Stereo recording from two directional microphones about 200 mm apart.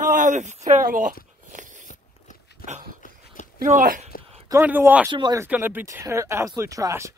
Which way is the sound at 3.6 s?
45° right (ahead or behind).